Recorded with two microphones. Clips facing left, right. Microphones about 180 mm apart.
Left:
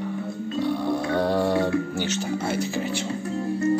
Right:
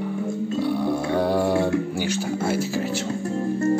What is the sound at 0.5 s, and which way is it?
Music, 10° right (ahead or behind).